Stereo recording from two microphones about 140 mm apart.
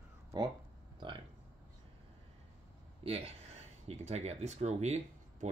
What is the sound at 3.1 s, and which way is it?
Speech, 45° right (ahead or behind).